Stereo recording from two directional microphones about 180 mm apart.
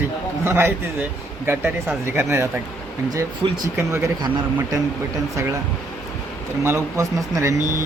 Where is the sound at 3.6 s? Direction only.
15° right (ahead or behind).